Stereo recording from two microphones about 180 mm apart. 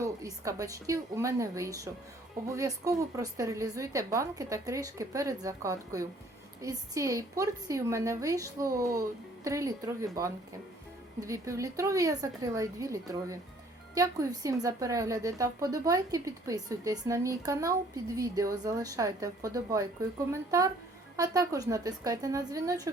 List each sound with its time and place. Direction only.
0.0 s a woman's voice: 20° right (ahead or behind)